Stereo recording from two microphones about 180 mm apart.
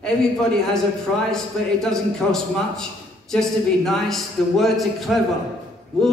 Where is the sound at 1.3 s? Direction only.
5° left (ahead or behind).